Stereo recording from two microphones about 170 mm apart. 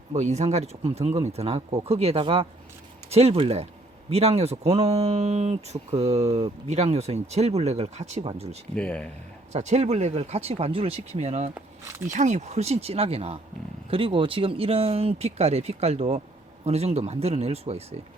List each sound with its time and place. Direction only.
0.1 s speech: 40° right (ahead or behind)
8.7 s speech: 10° left (ahead or behind)
9.5 s speech: 40° right (ahead or behind)